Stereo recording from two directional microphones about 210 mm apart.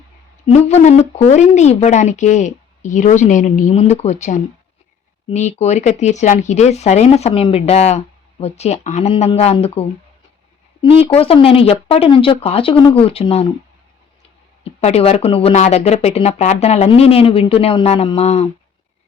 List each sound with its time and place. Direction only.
0.4 s speech: 30° left (ahead or behind)
14.6 s speech: 30° left (ahead or behind)